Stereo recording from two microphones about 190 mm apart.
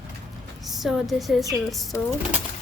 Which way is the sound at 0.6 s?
Centre (ahead or behind).